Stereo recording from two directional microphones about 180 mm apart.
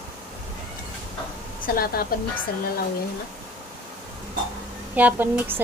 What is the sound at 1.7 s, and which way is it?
Speech, 55° left (ahead or behind).